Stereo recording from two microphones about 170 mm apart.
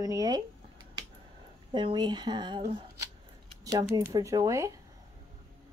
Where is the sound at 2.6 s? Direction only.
40° right (ahead or behind).